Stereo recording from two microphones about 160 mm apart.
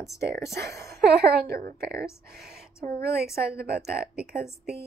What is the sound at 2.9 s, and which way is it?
Speech, 75° right (ahead or behind).